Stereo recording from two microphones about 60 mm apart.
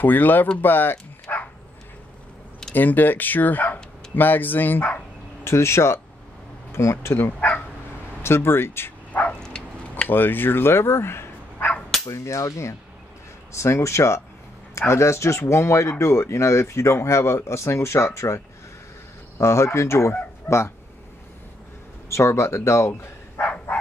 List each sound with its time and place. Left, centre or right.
0.0 s speech: left
1.3 s dog: left
2.7 s speech: left
5.4 s speech: left
7.3 s bow-wow: left
8.2 s speech: left
9.4 s dog: centre
10.0 s speech: left
12.1 s speech: left
22.1 s speech: left
23.4 s bow-wow: centre